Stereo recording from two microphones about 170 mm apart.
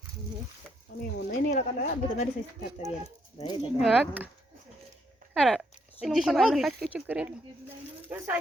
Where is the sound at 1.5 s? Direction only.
50° left (ahead or behind).